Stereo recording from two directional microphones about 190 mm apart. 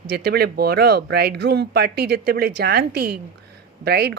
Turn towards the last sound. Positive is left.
turn(degrees=-55)  # may be behind; listen again after turning